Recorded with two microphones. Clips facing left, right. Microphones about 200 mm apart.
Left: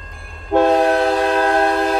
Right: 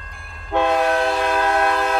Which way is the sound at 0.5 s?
35° left (ahead or behind).